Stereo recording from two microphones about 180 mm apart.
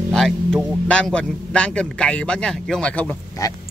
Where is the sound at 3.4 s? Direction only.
20° left (ahead or behind).